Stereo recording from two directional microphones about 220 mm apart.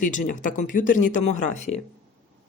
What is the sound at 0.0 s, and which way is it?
Speech, 35° left (ahead or behind).